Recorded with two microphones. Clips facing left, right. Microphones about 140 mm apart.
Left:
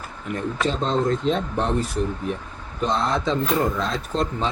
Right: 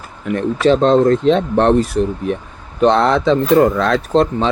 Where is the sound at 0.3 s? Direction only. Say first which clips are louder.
Right 11 dB; 75° right (ahead or behind).